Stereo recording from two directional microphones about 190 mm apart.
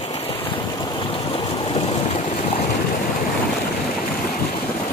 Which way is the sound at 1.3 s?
35° left (ahead or behind).